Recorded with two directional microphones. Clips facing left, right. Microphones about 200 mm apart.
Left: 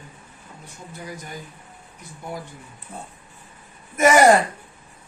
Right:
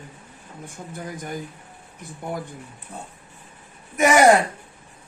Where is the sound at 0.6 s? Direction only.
50° right (ahead or behind).